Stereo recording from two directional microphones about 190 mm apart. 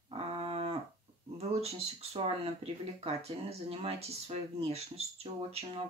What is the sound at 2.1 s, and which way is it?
Speech, 30° right (ahead or behind).